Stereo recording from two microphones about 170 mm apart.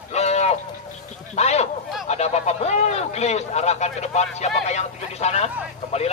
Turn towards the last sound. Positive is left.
turn(degrees=40)  # may be behind; listen again after turning